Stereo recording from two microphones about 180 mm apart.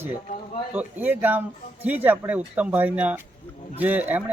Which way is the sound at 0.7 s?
10° right (ahead or behind).